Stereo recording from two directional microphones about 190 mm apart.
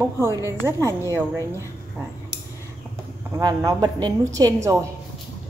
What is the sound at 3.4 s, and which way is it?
A woman's voice, 20° right (ahead or behind).